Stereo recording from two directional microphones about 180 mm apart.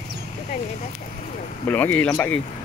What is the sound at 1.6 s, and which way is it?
Speech, 10° left (ahead or behind).